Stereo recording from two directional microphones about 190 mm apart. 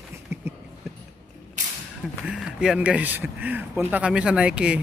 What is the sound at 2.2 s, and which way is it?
A man's voice, 5° right (ahead or behind).